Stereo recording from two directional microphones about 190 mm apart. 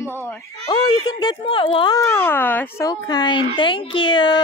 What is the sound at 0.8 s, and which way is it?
Speech, 25° left (ahead or behind).